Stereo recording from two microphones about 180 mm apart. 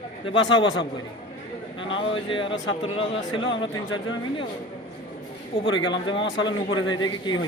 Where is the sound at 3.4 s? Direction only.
90° left.